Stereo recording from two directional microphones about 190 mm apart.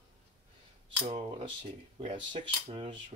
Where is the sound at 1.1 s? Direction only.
30° right (ahead or behind).